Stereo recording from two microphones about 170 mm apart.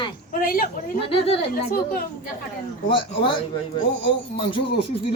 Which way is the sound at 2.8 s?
30° left (ahead or behind).